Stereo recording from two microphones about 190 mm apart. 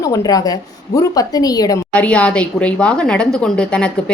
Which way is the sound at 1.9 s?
5° left (ahead or behind).